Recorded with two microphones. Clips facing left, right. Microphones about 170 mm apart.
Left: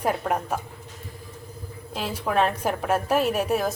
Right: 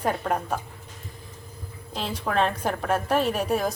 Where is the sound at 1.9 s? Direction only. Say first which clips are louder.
Left 1 dB; 5° left (ahead or behind).